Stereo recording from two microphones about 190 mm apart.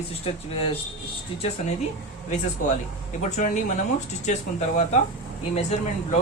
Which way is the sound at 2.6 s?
45° left (ahead or behind).